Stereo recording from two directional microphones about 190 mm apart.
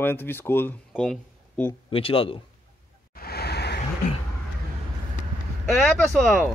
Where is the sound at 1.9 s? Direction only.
30° left (ahead or behind).